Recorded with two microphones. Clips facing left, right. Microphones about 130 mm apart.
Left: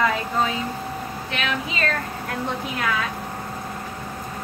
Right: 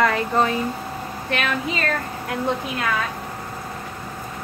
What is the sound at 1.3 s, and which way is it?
Speech, 50° right (ahead or behind).